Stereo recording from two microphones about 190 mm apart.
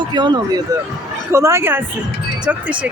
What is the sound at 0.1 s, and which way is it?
A woman's voice, 20° right (ahead or behind).